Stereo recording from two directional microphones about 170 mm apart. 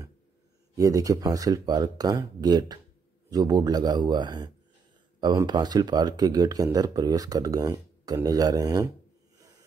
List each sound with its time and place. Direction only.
0.7 s speech: 20° right (ahead or behind)